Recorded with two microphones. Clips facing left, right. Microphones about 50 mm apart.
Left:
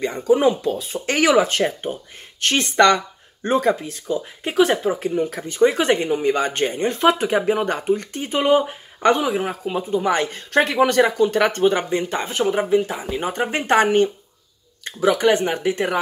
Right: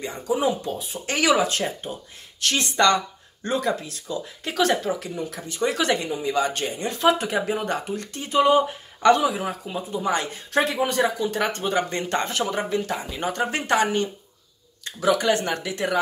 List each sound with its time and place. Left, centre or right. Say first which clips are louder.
0.3 s speech: left 7 dB; left
4.6 s speech: left 4 dB; centre
5.0 s speech: left 9 dB; left
6.0 s speech: left 4 dB; left
10.8 s speech: left 7 dB; left
11.9 s speech: left 3 dB; centre
12.3 s speech: left 5 dB; left
12.5 s speech: left 6 dB; centre
13.3 s speech: left 3 dB; left
15.0 s speech: left 4 dB; left
15.3 s speech: left 4 dB; left
15.6 s speech: left 4 dB; left